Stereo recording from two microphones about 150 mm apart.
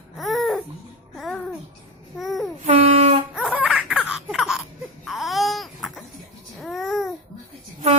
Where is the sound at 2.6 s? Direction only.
40° right (ahead or behind).